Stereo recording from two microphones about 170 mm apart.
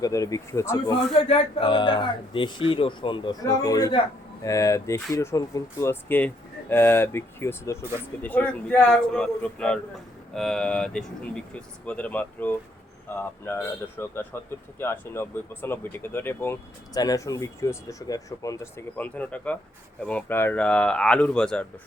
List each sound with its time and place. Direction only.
0.0 s speech: 20° left (ahead or behind)
1.1 s a man's voice: 35° left (ahead or behind); by 21.7 s 5° left (ahead or behind)